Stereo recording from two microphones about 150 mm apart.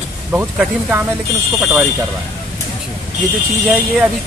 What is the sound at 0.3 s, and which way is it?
Speech, 10° right (ahead or behind).